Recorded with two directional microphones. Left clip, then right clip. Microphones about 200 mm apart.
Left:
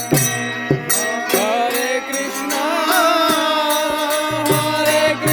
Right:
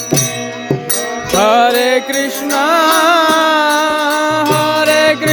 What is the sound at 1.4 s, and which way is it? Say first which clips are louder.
Mantra: right 8 dB; 55° right (ahead or behind).